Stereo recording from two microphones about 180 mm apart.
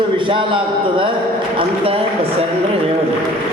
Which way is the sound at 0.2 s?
25° right (ahead or behind).